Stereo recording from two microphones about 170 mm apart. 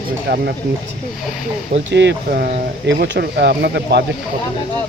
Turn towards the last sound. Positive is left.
turn(degrees=-75)  # may be behind; listen again after turning